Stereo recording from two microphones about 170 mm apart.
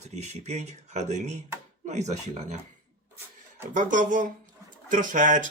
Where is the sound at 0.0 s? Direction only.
40° right (ahead or behind).